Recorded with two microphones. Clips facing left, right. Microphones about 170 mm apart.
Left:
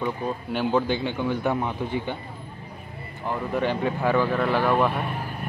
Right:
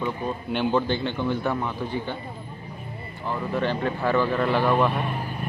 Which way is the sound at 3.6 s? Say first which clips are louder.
Left 1 dB; 15° left (ahead or behind).